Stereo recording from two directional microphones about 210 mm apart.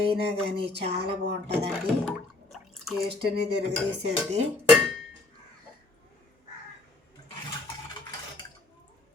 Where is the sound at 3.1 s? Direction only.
50° right (ahead or behind).